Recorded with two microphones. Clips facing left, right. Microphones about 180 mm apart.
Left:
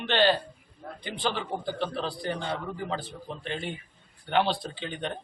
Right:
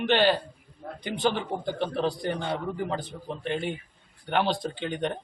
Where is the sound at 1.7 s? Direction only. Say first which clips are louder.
Right 6 dB; 20° right (ahead or behind).